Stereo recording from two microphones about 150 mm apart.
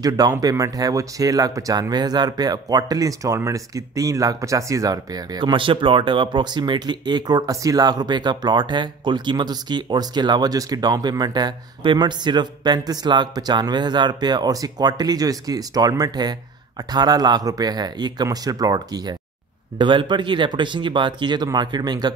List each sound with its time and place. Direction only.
0.0 s speech: 25° right (ahead or behind)